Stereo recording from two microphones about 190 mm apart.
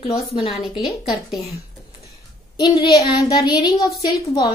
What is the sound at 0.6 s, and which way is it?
Speech, centre (ahead or behind).